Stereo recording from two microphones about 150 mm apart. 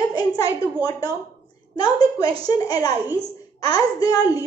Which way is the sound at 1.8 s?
25° left (ahead or behind).